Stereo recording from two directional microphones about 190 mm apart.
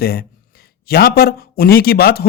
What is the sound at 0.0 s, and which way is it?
A man's voice, 55° left (ahead or behind).